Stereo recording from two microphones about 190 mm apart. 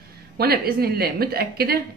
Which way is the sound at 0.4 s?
55° right (ahead or behind).